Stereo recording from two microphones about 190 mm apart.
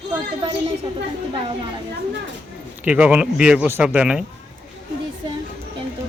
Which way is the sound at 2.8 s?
5° right (ahead or behind).